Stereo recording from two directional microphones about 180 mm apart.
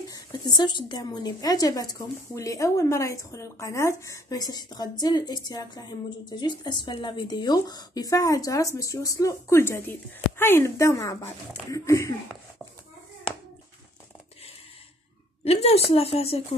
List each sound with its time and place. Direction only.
0.1 s a woman's voice: 20° left (ahead or behind)
15.4 s a woman's voice: 35° left (ahead or behind)